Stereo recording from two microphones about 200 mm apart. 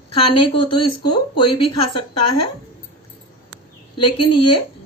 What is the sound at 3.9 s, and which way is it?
Speech, 25° left (ahead or behind).